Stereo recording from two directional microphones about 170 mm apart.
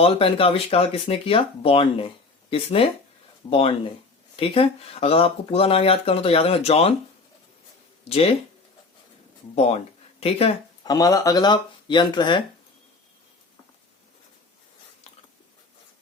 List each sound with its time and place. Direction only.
0.0 s speech: 35° left (ahead or behind)
4.4 s speech: 35° left (ahead or behind)
8.0 s speech: 35° left (ahead or behind)
10.2 s speech: 35° left (ahead or behind)
10.8 s speech: 20° left (ahead or behind)